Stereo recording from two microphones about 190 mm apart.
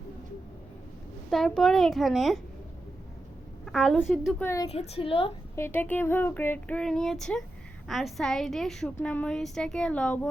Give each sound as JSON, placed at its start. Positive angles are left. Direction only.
{"t": 1.3, "sound": "a woman's voice", "side_deg": 5}
{"t": 3.7, "sound": "a woman's voice", "side_deg": 0}
{"t": 4.7, "sound": "a woman's voice", "side_deg": 30}
{"t": 5.5, "sound": "a woman's voice", "side_deg": 10}